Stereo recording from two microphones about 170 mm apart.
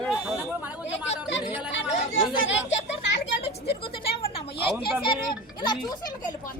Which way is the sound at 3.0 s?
85° left.